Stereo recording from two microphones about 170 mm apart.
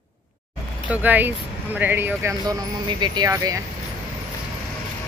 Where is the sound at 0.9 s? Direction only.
10° right (ahead or behind).